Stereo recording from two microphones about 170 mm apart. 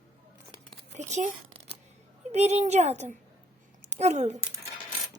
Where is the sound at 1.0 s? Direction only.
45° right (ahead or behind).